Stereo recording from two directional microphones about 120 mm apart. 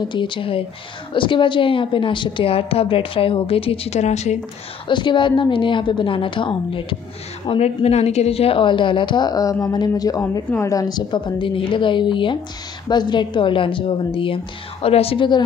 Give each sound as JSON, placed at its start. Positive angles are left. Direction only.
{"t": 0.1, "sound": "a woman's voice", "side_deg": 40}
{"t": 4.8, "sound": "a woman's voice", "side_deg": 40}
{"t": 7.4, "sound": "a woman's voice", "side_deg": 55}